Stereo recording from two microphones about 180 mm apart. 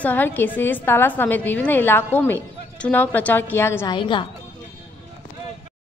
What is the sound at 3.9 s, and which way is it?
Speech, 25° left (ahead or behind).